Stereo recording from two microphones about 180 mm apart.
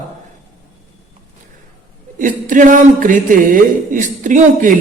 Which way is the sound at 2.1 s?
45° right (ahead or behind).